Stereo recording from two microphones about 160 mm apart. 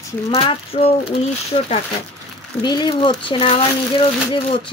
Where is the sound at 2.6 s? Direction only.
30° left (ahead or behind).